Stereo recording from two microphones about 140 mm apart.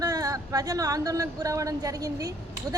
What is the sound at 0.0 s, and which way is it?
A woman's voice, 25° right (ahead or behind).